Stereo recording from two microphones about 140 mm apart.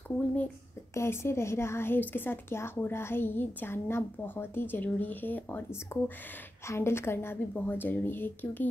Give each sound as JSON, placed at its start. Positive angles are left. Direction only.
{"t": 0.9, "sound": "speech", "side_deg": 20}